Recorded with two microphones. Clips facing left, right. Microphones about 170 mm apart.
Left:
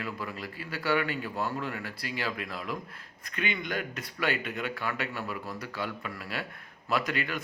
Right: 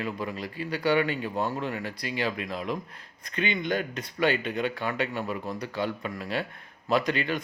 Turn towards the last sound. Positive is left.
turn(degrees=-25)  # may be behind; listen again after turning